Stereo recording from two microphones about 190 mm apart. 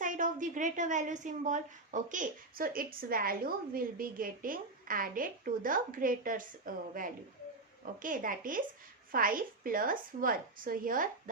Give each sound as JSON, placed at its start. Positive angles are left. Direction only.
{"t": 0.0, "sound": "a woman's voice", "side_deg": -45}